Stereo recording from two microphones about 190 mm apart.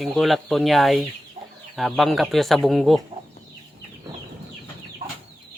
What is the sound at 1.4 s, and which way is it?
Chicken, 35° right (ahead or behind).